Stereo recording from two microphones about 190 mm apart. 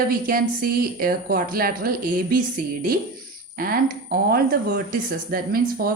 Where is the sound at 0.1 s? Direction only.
50° right (ahead or behind).